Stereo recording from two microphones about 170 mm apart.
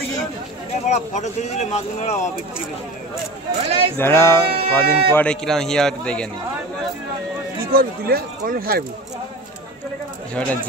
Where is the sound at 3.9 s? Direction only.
15° left (ahead or behind).